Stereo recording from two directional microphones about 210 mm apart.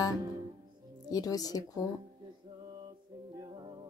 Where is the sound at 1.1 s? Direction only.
15° left (ahead or behind).